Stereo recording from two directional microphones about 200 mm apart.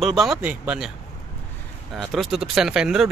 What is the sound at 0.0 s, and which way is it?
Speech, centre (ahead or behind).